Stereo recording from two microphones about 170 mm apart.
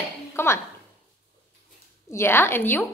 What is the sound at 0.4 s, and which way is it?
Speech, 15° left (ahead or behind).